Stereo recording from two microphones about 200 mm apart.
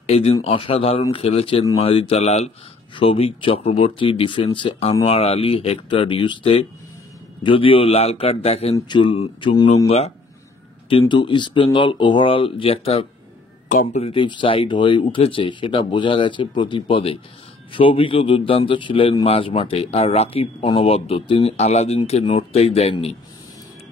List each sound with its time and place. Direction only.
0.0 s a man's voice: 30° left (ahead or behind)